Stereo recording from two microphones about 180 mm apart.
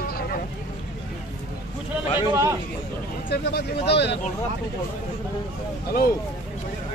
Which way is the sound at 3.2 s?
65° left (ahead or behind).